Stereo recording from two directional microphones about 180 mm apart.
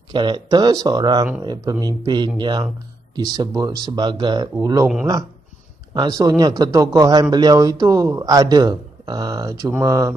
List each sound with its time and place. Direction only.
0.1 s speech: 25° right (ahead or behind)
5.9 s speech: 20° right (ahead or behind)